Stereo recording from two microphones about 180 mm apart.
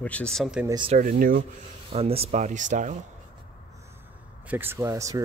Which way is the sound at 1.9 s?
35° right (ahead or behind).